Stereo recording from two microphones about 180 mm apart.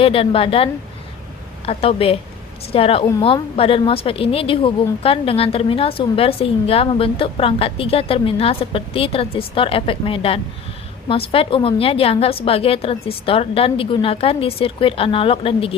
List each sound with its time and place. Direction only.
0.0 s a woman's voice: 30° left (ahead or behind)